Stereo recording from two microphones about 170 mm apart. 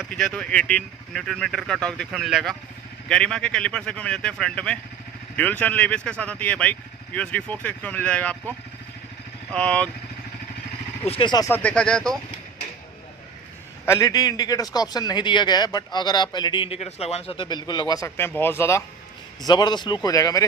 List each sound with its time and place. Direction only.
0.1 s speech: 5° left (ahead or behind)
11.1 s a man's voice: 30° left (ahead or behind)
11.5 s speech: 5° left (ahead or behind)
13.9 s a man's voice: 25° left (ahead or behind)
19.4 s a man's voice: 25° left (ahead or behind)